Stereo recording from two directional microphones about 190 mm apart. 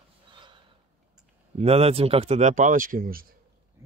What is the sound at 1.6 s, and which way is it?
Speech, 30° right (ahead or behind).